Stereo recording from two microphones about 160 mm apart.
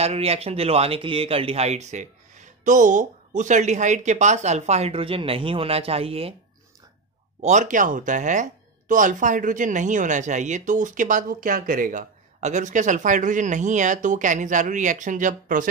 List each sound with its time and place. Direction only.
0.0 s speech: 40° right (ahead or behind)
7.4 s speech: 50° right (ahead or behind)